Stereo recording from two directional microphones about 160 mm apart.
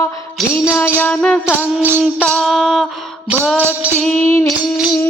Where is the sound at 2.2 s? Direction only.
Centre (ahead or behind).